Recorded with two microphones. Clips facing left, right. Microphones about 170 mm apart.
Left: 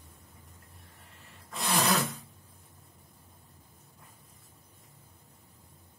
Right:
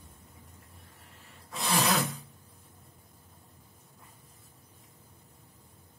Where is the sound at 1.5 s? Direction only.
Centre (ahead or behind).